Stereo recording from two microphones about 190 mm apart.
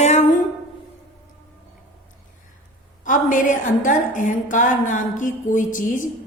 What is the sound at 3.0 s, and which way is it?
A woman's voice, 40° left (ahead or behind).